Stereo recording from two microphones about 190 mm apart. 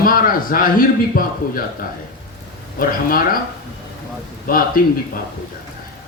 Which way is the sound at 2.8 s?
50° left (ahead or behind).